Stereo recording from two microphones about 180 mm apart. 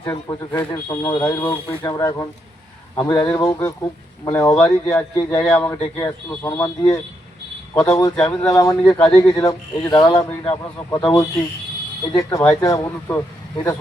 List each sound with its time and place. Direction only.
0.0 s a man's voice: 20° left (ahead or behind)
5.5 s a man's voice: 10° left (ahead or behind)
7.7 s a man's voice: 20° left (ahead or behind)